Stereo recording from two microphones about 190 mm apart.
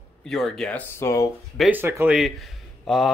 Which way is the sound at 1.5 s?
10° right (ahead or behind).